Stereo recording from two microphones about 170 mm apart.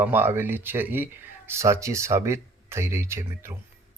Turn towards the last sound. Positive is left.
turn(degrees=-15)  # may be behind; listen again after turning